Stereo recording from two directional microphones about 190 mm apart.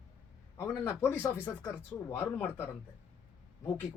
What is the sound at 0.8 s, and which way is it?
Speech, 10° left (ahead or behind).